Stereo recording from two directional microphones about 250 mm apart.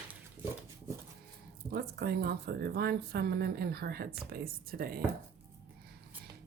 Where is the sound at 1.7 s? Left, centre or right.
Right.